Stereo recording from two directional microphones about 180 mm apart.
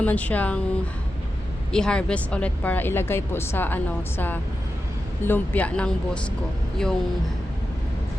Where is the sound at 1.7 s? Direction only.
5° left (ahead or behind).